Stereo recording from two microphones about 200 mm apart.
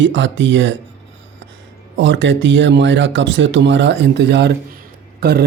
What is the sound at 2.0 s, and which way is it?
Speech, 65° right (ahead or behind).